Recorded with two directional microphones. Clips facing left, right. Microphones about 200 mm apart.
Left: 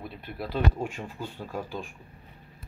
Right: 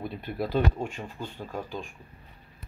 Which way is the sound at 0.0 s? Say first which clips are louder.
Right 5 dB; centre (ahead or behind).